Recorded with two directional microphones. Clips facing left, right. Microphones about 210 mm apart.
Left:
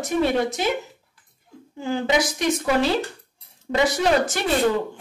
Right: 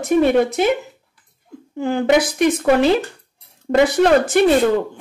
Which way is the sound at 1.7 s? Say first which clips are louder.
Right 6 dB; 55° right (ahead or behind).